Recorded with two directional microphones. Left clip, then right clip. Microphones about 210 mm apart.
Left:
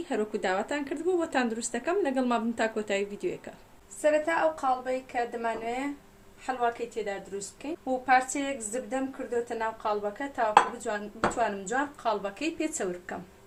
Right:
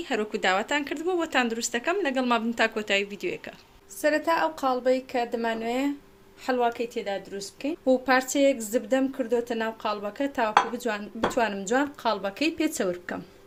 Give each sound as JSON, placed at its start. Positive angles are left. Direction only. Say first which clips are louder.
{"t": 0.0, "sound": "speech", "louder": "right 4 dB", "side_deg": -5}
{"t": 4.0, "sound": "a woman's voice", "louder": "right 1 dB", "side_deg": -50}